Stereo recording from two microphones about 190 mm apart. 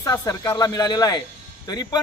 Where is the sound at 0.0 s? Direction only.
20° left (ahead or behind).